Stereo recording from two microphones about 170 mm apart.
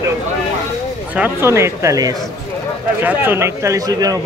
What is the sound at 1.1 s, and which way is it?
A man's voice, 10° right (ahead or behind).